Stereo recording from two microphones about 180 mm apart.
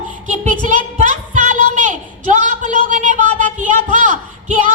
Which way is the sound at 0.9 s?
45° right (ahead or behind).